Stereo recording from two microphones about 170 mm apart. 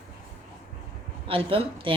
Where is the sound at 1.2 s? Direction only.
30° right (ahead or behind).